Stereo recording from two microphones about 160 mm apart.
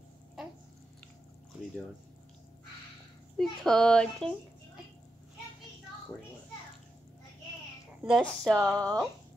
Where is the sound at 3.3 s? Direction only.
5° left (ahead or behind).